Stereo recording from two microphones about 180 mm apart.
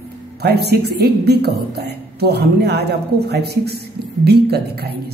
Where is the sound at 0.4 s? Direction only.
65° right (ahead or behind).